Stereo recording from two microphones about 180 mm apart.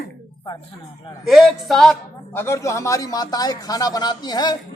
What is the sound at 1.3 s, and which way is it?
A man's voice, centre (ahead or behind).